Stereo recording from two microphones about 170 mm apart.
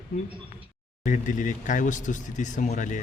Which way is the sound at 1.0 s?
50° left (ahead or behind).